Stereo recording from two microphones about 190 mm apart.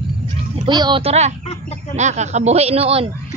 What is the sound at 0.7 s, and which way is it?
A woman's voice, 25° right (ahead or behind).